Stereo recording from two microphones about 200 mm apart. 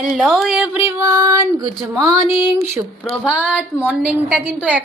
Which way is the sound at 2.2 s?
20° left (ahead or behind).